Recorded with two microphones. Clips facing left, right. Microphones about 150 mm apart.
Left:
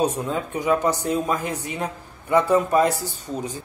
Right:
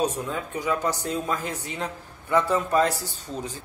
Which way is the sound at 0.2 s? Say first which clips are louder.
Left 4 dB; 20° left (ahead or behind).